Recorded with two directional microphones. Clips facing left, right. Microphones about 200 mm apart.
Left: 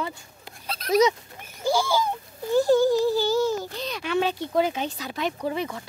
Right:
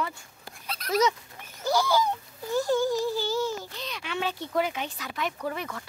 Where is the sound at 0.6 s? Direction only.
30° left (ahead or behind).